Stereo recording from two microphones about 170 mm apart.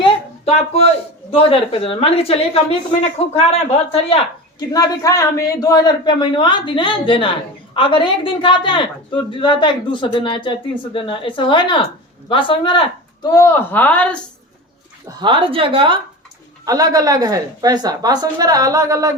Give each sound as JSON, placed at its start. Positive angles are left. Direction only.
{"t": 0.0, "sound": "a sound", "side_deg": 35}
{"t": 1.3, "sound": "a woman's voice", "side_deg": 35}
{"t": 4.7, "sound": "a woman's voice", "side_deg": 20}
{"t": 13.2, "sound": "speech", "side_deg": 15}
{"t": 15.0, "sound": "a woman's voice", "side_deg": -30}